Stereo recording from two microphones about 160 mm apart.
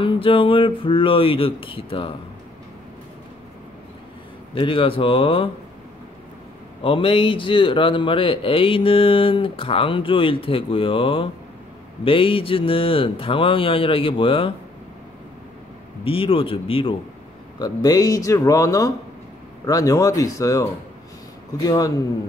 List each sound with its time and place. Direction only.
0.0 s a man's voice: 35° left (ahead or behind)
4.6 s a man's voice: 35° left (ahead or behind)
6.8 s a man's voice: 35° left (ahead or behind)
16.0 s a man's voice: 35° left (ahead or behind)